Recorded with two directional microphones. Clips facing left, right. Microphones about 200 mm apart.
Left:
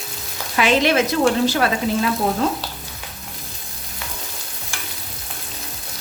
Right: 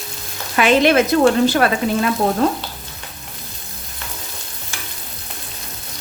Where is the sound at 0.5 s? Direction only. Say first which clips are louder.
Right 3 dB; 55° right (ahead or behind).